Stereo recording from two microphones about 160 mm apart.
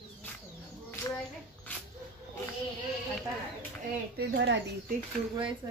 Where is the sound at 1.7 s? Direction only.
10° left (ahead or behind).